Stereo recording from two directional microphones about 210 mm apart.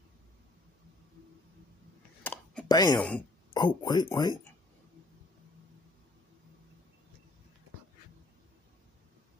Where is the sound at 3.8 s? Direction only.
20° left (ahead or behind).